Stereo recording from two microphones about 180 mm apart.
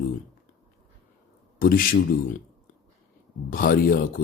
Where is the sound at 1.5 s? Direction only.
55° left (ahead or behind).